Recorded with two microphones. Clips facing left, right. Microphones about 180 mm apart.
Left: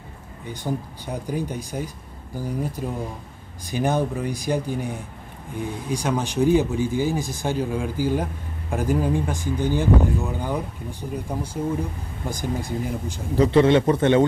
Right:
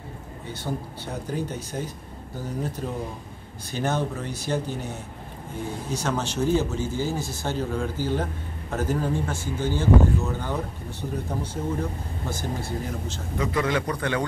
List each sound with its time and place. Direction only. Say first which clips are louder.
0.7 s speech: left 4 dB; 10° left (ahead or behind)
13.4 s a man's voice: left 9 dB; 30° left (ahead or behind)